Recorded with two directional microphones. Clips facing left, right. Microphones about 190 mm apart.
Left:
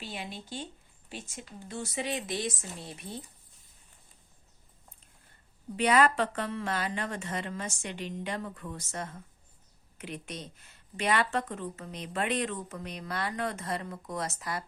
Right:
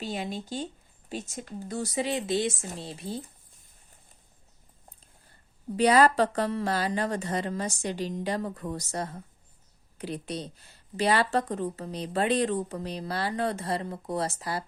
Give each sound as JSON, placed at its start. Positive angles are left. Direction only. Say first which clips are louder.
{"t": 0.0, "sound": "speech", "louder": "right 7 dB", "side_deg": -40}
{"t": 5.7, "sound": "speech", "louder": "right 4 dB", "side_deg": -35}